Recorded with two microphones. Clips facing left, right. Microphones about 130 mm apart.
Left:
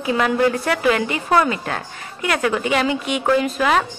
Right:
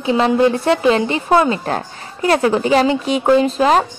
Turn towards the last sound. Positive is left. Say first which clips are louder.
# right 5 dB
turn(degrees=-30)  # may be behind; listen again after turning